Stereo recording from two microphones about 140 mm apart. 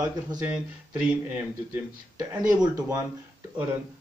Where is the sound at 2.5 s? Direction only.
25° right (ahead or behind).